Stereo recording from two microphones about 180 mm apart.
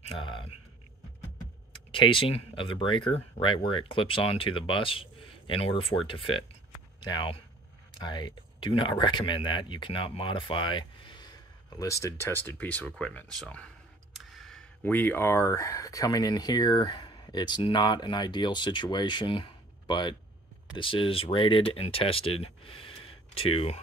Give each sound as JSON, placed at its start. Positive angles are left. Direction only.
{"t": 0.1, "sound": "speech", "side_deg": 30}
{"t": 1.9, "sound": "speech", "side_deg": 30}